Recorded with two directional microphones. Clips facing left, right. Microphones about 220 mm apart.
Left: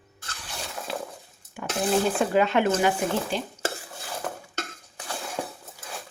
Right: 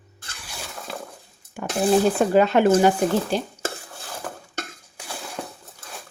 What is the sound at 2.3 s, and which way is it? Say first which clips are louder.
Speech: right 6 dB; 40° right (ahead or behind).